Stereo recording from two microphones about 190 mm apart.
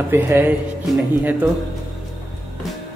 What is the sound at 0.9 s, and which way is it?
Speech, centre (ahead or behind).